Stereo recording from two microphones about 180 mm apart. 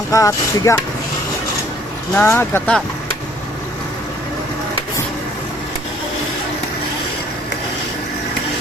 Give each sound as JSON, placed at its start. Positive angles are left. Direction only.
{"t": 0.1, "sound": "speech", "side_deg": 20}
{"t": 2.1, "sound": "speech", "side_deg": 15}